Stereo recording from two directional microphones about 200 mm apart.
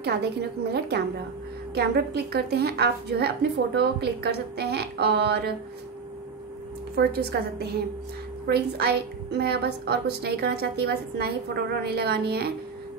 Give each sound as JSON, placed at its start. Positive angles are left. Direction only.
{"t": 0.0, "sound": "a woman's voice", "side_deg": -55}
{"t": 7.0, "sound": "a woman's voice", "side_deg": -55}